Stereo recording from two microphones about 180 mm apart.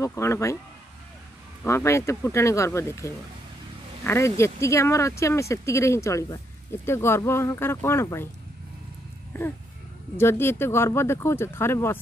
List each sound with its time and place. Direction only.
0.0 s speech: 15° left (ahead or behind)
1.6 s speech: 15° left (ahead or behind)
10.1 s speech: 15° left (ahead or behind)